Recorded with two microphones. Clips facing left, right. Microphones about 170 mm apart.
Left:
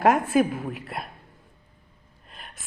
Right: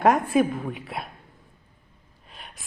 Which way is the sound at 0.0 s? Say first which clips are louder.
Even; centre (ahead or behind).